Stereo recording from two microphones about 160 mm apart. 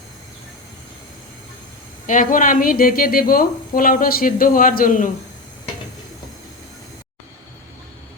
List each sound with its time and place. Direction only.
2.0 s a woman's voice: 55° left (ahead or behind)